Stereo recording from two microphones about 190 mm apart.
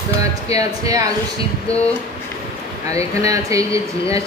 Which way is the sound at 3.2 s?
15° right (ahead or behind).